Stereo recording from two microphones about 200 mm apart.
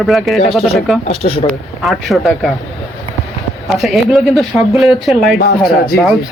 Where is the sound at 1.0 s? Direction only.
30° left (ahead or behind).